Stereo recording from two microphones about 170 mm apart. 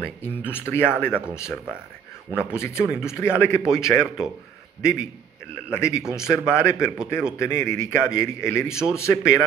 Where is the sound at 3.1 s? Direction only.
15° left (ahead or behind).